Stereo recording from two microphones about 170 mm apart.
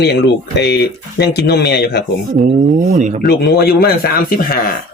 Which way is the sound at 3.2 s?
65° left (ahead or behind).